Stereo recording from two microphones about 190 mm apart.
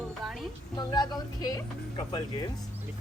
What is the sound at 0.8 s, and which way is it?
Speech, 20° left (ahead or behind).